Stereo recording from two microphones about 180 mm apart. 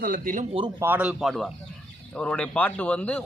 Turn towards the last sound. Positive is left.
turn(degrees=10)  # may be behind; listen again after turning